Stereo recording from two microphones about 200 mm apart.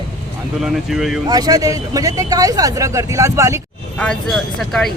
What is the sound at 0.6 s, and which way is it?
Speech, centre (ahead or behind).